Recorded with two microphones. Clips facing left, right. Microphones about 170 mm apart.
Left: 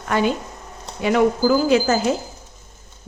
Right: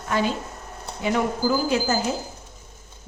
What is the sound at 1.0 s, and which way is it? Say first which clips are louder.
Speech: left 6 dB; 85° left.